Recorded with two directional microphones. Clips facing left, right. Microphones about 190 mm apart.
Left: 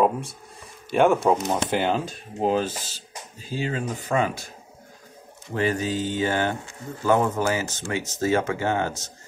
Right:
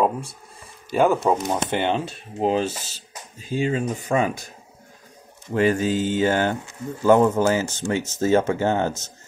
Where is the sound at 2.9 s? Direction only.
40° left (ahead or behind).